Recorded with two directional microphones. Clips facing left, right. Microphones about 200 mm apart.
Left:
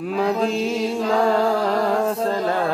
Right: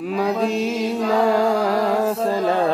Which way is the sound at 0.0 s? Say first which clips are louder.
Even; centre (ahead or behind).